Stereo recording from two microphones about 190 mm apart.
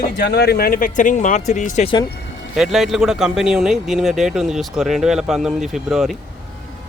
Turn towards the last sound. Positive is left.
turn(degrees=0)  # may be behind; listen again after turning